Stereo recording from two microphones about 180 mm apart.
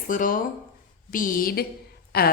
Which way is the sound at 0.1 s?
50° left (ahead or behind).